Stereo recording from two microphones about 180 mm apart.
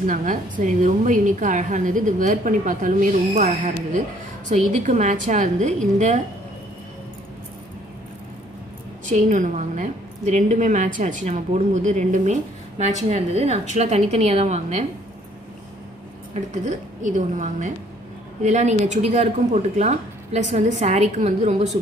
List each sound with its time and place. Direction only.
0.0 s a woman's voice: 45° right (ahead or behind)
9.1 s a woman's voice: 40° right (ahead or behind)
16.5 s a woman's voice: 45° right (ahead or behind)